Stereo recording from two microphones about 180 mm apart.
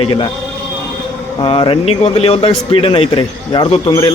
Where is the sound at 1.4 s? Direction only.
30° left (ahead or behind).